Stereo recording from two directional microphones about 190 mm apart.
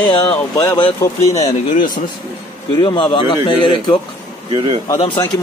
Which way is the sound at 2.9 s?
25° left (ahead or behind).